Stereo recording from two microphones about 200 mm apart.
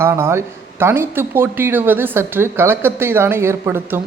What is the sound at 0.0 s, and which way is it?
Speech, 10° right (ahead or behind).